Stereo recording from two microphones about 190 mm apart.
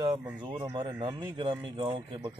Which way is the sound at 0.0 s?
20° right (ahead or behind).